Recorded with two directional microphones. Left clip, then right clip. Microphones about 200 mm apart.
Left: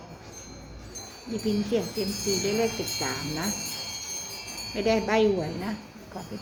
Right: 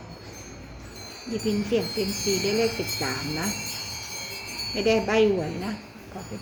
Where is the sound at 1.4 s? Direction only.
10° right (ahead or behind).